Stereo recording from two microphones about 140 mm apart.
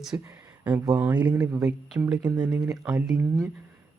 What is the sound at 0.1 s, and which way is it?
Speech, 15° right (ahead or behind).